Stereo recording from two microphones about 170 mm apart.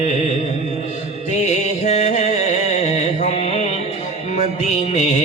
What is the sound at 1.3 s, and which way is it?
Music, 45° left (ahead or behind).